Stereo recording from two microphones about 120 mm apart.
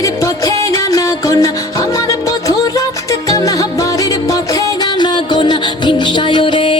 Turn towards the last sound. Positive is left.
turn(degrees=45)  # may be behind; listen again after turning